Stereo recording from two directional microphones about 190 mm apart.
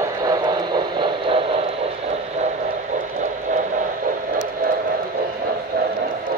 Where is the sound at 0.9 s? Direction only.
25° right (ahead or behind).